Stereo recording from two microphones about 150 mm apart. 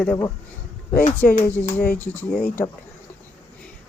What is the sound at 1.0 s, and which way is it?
Speech, 60° left (ahead or behind).